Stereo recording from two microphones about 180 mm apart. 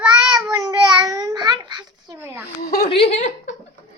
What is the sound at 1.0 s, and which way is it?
A child's voice, 20° right (ahead or behind).